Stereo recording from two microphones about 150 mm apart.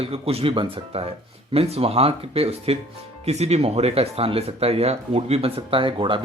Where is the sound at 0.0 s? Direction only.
40° right (ahead or behind).